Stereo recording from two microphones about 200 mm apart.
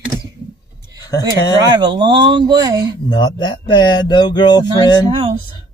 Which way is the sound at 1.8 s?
25° right (ahead or behind).